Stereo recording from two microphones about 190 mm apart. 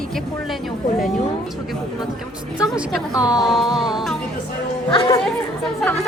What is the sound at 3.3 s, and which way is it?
Music, centre (ahead or behind).